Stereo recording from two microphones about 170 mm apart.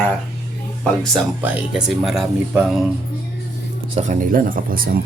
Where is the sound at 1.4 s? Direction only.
5° right (ahead or behind).